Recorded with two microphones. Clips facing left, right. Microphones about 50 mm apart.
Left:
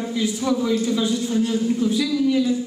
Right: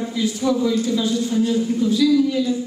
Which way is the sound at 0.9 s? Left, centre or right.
Centre.